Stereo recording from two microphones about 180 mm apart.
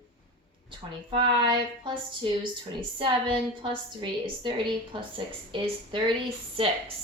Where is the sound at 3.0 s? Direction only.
30° right (ahead or behind).